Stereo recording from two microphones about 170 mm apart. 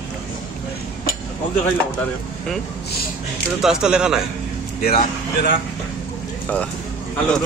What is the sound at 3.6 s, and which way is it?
Speech, 5° right (ahead or behind).